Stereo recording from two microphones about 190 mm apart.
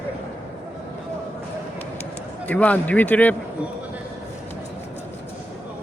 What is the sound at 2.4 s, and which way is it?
Speech, 5° left (ahead or behind).